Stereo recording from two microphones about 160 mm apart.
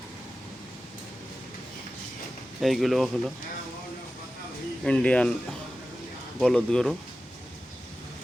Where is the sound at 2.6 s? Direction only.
Centre (ahead or behind).